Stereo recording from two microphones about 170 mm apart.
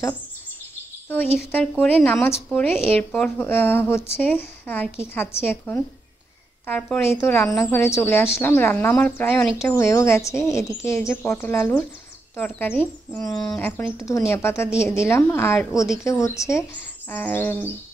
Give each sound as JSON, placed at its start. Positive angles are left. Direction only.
{"t": 1.0, "sound": "a woman's voice", "side_deg": 10}